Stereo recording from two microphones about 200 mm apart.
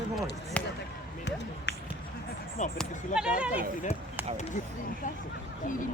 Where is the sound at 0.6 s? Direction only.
5° left (ahead or behind).